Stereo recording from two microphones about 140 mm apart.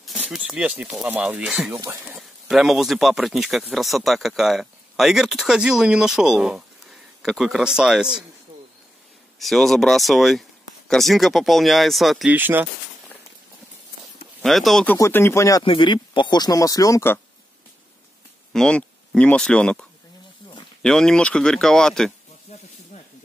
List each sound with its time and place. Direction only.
0.0 s speech: centre (ahead or behind)
1.8 s speech: 20° right (ahead or behind)
2.4 s speech: centre (ahead or behind)
9.4 s speech: centre (ahead or behind)
12.4 s speech: 15° right (ahead or behind)
14.4 s speech: centre (ahead or behind)
14.9 s speech: 15° left (ahead or behind)
15.6 s speech: 35° left (ahead or behind); by 17.2 s 20° left (ahead or behind)
18.5 s speech: 5° left (ahead or behind)
22.5 s snake: 50° left (ahead or behind)